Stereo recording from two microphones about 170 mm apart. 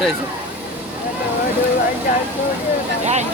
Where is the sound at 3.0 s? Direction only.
40° right (ahead or behind).